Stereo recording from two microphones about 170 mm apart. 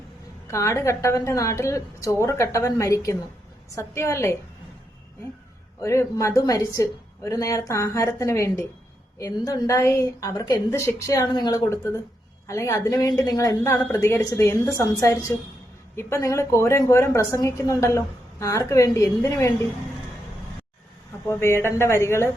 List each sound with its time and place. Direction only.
0.5 s a woman's voice: 15° left (ahead or behind)
5.8 s a woman's voice: 15° left (ahead or behind)
21.2 s a woman's voice: 15° left (ahead or behind)